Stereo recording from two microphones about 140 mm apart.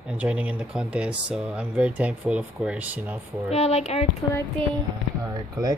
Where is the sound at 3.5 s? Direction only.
50° left (ahead or behind).